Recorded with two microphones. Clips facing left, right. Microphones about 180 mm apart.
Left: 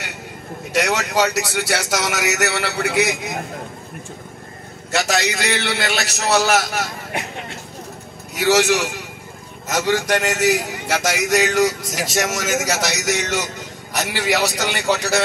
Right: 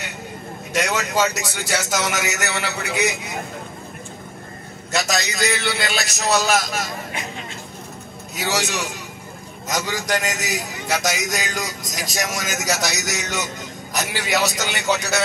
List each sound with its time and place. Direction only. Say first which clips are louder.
0.7 s a man's voice: left 2 dB; 65° left (ahead or behind)
4.9 s a man's voice: left 3 dB; 65° left (ahead or behind)